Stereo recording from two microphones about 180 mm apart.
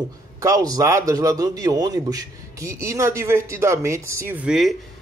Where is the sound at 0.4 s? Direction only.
20° right (ahead or behind).